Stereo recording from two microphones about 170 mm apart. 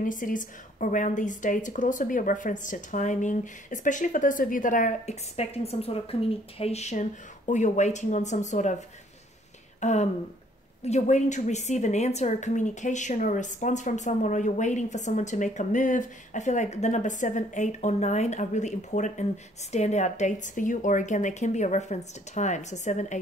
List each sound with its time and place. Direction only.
0.0 s a woman's voice: 50° left (ahead or behind)
9.8 s a sound: 40° left (ahead or behind)
10.8 s a woman's voice: 40° left (ahead or behind)